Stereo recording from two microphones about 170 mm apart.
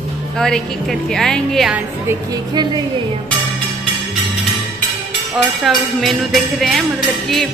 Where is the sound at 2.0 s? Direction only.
25° right (ahead or behind).